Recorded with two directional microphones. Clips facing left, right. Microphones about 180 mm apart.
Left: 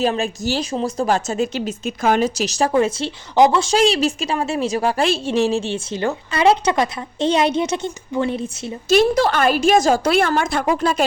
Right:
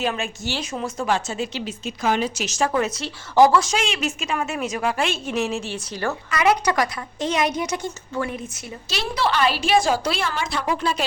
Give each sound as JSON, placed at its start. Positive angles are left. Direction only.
{"t": 0.0, "sound": "a woman's voice", "side_deg": 35}
{"t": 8.9, "sound": "a woman's voice", "side_deg": 45}